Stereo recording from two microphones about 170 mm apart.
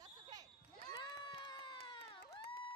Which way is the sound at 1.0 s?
25° left (ahead or behind).